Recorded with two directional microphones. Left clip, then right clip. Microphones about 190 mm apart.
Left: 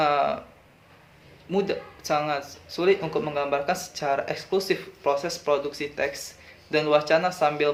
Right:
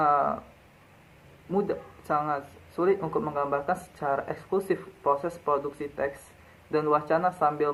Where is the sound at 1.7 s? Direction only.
40° left (ahead or behind).